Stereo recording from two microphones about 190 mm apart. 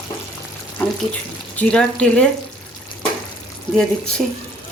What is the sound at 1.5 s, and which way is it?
Speech, 5° left (ahead or behind).